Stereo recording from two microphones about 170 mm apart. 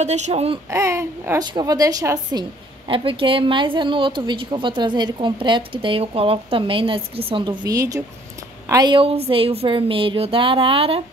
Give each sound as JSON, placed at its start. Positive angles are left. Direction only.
{"t": 0.0, "sound": "a woman's voice", "side_deg": -40}
{"t": 0.7, "sound": "a woman's voice", "side_deg": -15}